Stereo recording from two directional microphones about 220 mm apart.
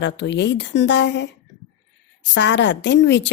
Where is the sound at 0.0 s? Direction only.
55° left (ahead or behind).